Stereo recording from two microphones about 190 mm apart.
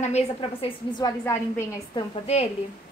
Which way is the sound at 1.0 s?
20° left (ahead or behind).